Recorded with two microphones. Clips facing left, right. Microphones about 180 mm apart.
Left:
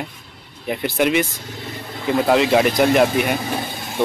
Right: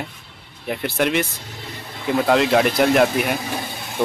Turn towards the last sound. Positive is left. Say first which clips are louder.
# left 1 dB
turn(degrees=0)  # may be behind; listen again after turning